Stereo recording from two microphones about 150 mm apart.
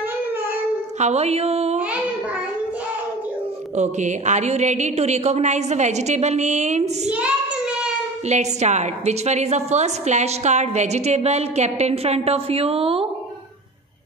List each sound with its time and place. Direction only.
0.9 s a woman's voice: 50° right (ahead or behind)
3.7 s a woman's voice: 50° right (ahead or behind)
7.1 s child singing: 10° right (ahead or behind)
8.3 s a woman's voice: 50° right (ahead or behind)